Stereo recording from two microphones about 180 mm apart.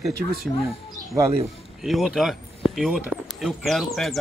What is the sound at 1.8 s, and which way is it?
Speech, centre (ahead or behind).